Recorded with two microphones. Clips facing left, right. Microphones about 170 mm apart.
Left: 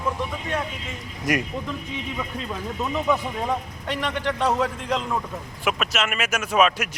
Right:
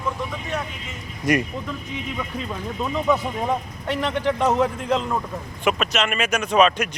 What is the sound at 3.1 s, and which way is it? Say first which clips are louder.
A man's voice: right 3 dB; 5° right (ahead or behind).